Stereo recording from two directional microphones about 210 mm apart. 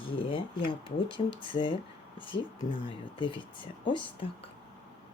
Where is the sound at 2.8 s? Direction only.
25° left (ahead or behind).